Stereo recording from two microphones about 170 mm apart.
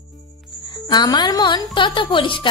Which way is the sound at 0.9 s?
25° left (ahead or behind).